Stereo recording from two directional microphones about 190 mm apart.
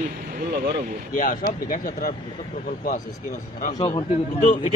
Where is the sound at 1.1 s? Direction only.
45° left (ahead or behind).